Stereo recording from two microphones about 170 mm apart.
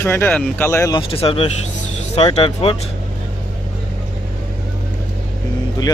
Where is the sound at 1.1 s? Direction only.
35° left (ahead or behind).